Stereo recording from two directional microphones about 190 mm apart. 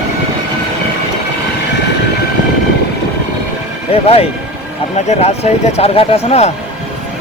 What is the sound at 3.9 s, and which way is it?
Speech, 30° left (ahead or behind).